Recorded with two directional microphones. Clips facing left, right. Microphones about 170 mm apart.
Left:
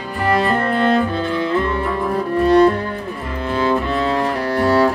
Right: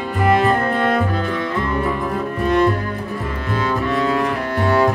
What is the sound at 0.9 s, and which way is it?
Music, 30° left (ahead or behind).